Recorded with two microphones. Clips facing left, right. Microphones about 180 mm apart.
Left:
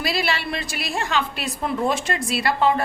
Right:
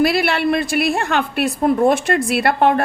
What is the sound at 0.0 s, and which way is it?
A woman's voice, 60° right (ahead or behind).